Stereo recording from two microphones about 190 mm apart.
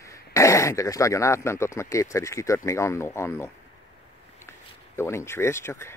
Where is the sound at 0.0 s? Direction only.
15° left (ahead or behind).